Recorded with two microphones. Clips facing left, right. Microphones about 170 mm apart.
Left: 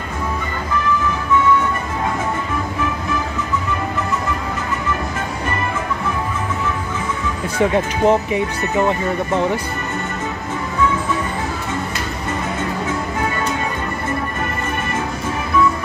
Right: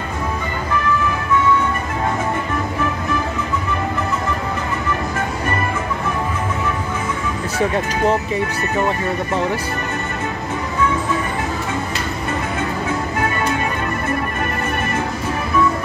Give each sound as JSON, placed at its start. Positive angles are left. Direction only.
{"t": 8.0, "sound": "speech", "side_deg": 15}